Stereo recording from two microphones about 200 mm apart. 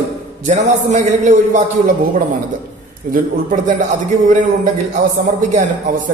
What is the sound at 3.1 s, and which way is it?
Speech, 40° right (ahead or behind).